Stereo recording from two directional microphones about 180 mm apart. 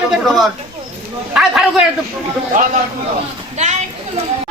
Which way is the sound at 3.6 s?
40° right (ahead or behind).